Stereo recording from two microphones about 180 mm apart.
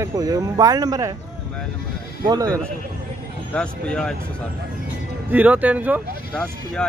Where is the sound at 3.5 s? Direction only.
5° left (ahead or behind).